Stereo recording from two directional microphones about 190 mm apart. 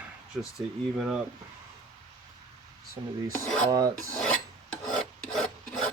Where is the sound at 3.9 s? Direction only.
5° left (ahead or behind).